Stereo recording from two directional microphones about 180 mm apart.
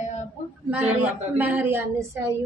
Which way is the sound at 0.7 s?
10° right (ahead or behind).